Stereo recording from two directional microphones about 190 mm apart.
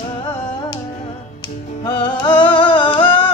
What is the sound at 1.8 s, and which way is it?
Music, 25° left (ahead or behind).